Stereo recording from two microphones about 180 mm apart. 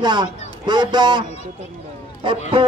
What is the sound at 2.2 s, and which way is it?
Speech, 30° right (ahead or behind).